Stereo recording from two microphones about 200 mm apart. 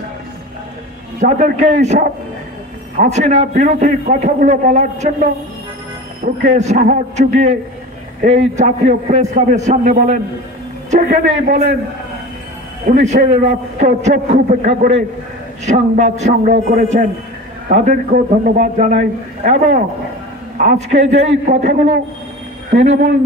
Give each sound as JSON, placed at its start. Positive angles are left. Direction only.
{"t": 1.2, "sound": "a man's voice", "side_deg": -35}
{"t": 12.8, "sound": "a man's voice", "side_deg": -35}